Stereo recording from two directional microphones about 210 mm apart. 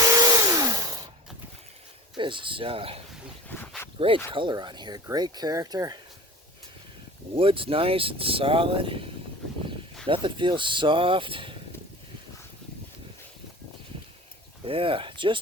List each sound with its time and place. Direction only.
0.0 s a sound: 15° right (ahead or behind)
2.1 s speech: 25° right (ahead or behind)
3.5 s a sound: 10° left (ahead or behind)
3.9 s speech: 25° right (ahead or behind)
7.3 s speech: 25° right (ahead or behind)
10.1 s speech: 25° right (ahead or behind)
14.6 s speech: 25° right (ahead or behind)